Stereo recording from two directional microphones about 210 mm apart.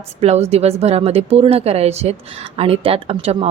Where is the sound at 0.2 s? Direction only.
30° right (ahead or behind).